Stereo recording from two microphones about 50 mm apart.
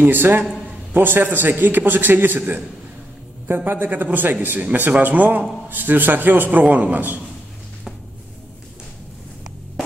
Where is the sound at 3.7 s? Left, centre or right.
Right.